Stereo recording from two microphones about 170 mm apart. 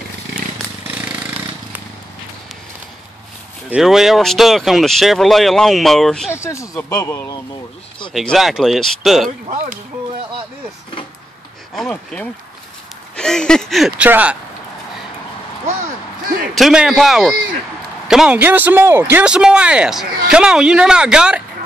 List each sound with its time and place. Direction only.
0.8 s a sound: 10° right (ahead or behind)
3.7 s speech: centre (ahead or behind)
6.3 s speech: 15° left (ahead or behind)
8.1 s speech: centre (ahead or behind)
11.7 s speech: 5° left (ahead or behind)
16.5 s speech: centre (ahead or behind)